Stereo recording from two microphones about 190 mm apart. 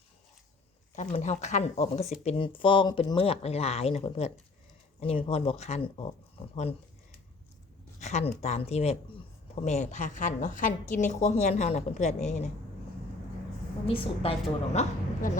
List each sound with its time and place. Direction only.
0.9 s a woman's voice: 35° left (ahead or behind)
8.0 s a woman's voice: 35° left (ahead or behind)
13.8 s speech: 30° left (ahead or behind)